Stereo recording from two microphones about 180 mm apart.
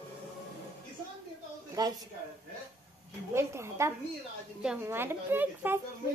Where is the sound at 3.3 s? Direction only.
15° right (ahead or behind).